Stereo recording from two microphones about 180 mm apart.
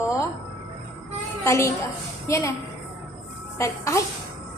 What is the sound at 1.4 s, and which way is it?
A woman's voice, 15° left (ahead or behind).